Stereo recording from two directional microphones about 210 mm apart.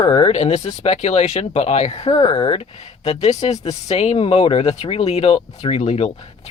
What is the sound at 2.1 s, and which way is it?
Speech, 20° left (ahead or behind).